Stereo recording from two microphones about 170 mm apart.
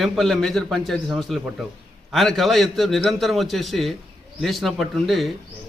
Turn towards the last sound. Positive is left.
turn(degrees=0)  # may be behind; listen again after turning